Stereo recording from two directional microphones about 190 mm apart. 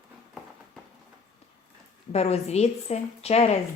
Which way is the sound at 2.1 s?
35° left (ahead or behind).